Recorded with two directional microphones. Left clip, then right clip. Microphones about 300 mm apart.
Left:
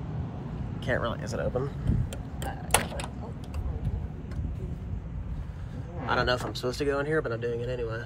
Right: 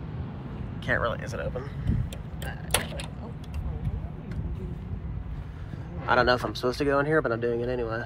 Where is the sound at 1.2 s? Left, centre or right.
Centre.